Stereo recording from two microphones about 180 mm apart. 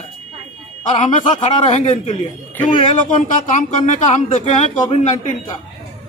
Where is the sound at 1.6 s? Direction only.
40° left (ahead or behind).